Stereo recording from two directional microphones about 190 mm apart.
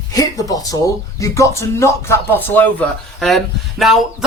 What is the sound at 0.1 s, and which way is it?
Speech, 20° left (ahead or behind).